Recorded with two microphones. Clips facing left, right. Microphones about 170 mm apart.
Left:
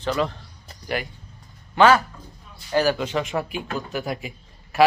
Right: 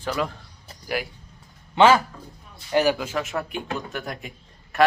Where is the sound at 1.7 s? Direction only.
20° right (ahead or behind).